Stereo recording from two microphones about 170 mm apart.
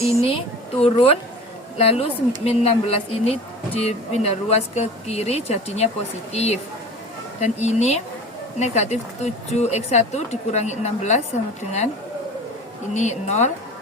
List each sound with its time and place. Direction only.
0.3 s speech: 35° left (ahead or behind)
12.9 s speech: 45° left (ahead or behind)